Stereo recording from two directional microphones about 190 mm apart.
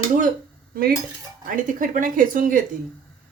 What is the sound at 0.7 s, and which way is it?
Cutlery, 50° right (ahead or behind).